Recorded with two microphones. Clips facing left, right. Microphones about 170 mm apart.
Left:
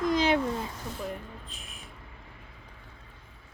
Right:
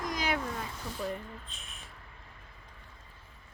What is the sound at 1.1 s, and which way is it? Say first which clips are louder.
Speech: even; centre (ahead or behind).